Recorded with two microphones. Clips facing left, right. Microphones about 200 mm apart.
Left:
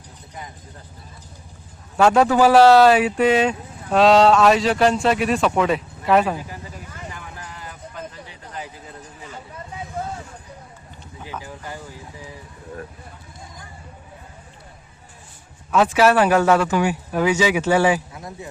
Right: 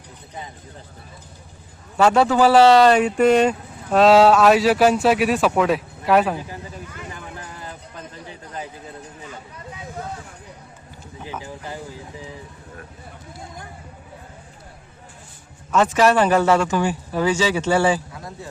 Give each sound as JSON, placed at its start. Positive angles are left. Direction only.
{"t": 2.0, "sound": "speech", "side_deg": 0}
{"t": 11.2, "sound": "a sound", "side_deg": -15}
{"t": 15.7, "sound": "speech", "side_deg": 5}